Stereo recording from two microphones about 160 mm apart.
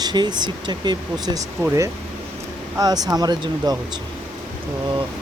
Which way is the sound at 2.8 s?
25° right (ahead or behind).